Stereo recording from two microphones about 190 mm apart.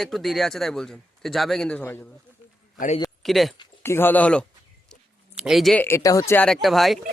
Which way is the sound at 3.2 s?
Centre (ahead or behind).